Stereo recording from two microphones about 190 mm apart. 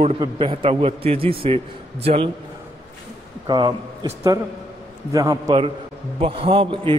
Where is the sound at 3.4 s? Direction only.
25° right (ahead or behind).